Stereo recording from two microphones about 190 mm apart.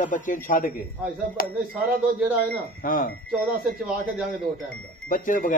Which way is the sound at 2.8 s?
45° left (ahead or behind).